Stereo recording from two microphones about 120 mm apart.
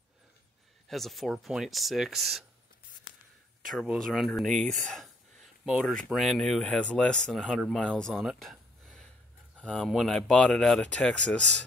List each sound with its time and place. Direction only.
0.8 s speech: centre (ahead or behind)
4.0 s speech: centre (ahead or behind)